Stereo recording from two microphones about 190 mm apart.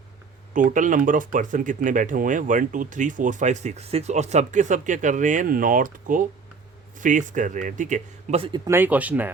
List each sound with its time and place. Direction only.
0.5 s speech: 45° right (ahead or behind)
8.6 s speech: 10° right (ahead or behind)